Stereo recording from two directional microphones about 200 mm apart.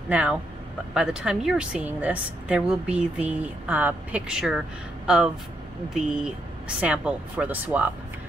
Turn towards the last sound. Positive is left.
turn(degrees=-10)  # may be behind; listen again after turning